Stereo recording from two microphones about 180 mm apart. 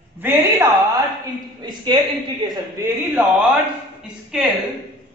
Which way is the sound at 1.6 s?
25° right (ahead or behind).